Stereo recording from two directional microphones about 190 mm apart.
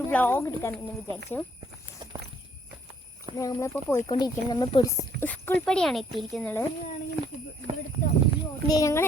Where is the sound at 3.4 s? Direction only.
15° left (ahead or behind).